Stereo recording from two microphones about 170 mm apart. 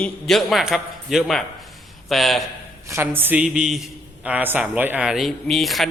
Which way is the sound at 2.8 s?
15° right (ahead or behind).